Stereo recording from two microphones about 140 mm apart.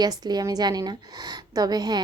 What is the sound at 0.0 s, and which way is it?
A woman's voice, 30° right (ahead or behind).